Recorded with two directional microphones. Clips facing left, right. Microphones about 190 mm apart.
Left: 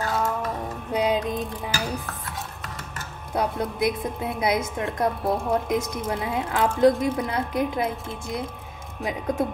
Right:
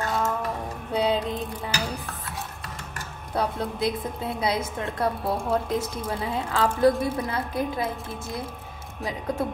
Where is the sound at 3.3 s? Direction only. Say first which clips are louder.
Left 1 dB; 15° left (ahead or behind).